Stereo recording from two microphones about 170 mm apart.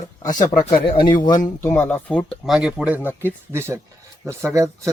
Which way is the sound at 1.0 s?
25° left (ahead or behind).